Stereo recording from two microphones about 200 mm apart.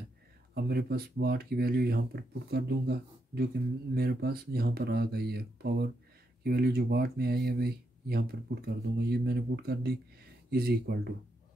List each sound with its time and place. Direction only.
0.6 s speech: 50° right (ahead or behind)